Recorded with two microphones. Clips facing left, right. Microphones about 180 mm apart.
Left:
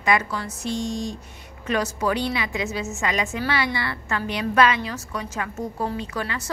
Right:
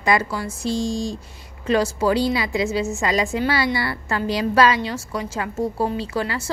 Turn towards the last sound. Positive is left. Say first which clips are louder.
# right 4 dB
turn(degrees=-30)  # may be behind; listen again after turning